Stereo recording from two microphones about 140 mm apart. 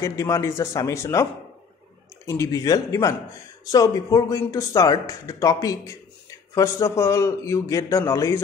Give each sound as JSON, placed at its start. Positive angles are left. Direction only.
{"t": 0.0, "sound": "speech", "side_deg": 25}
{"t": 2.2, "sound": "speech", "side_deg": 20}